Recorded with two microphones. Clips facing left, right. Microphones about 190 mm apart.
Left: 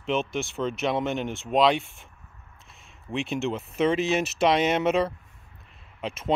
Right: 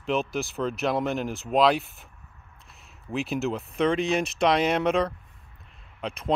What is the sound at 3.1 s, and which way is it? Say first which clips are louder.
Speech: even; centre (ahead or behind).